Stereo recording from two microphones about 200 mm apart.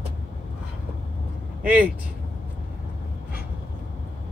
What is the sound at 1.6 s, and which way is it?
Vehicle, 5° right (ahead or behind).